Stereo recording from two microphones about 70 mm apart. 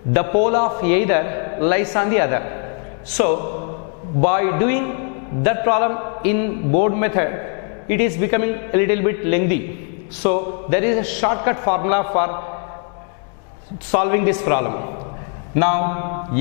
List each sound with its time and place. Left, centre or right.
0.1 s a man's voice: centre
13.9 s a man's voice: centre